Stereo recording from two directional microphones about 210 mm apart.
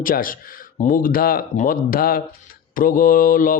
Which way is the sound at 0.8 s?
40° left (ahead or behind).